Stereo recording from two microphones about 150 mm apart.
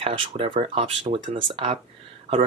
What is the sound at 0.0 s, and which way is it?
Speech, 35° right (ahead or behind).